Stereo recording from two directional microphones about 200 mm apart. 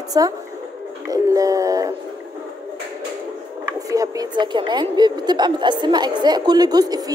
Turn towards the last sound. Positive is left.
turn(degrees=-20)  # may be behind; listen again after turning